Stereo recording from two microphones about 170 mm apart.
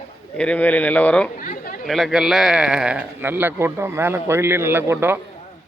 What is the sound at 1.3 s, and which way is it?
Chatter, 50° left (ahead or behind).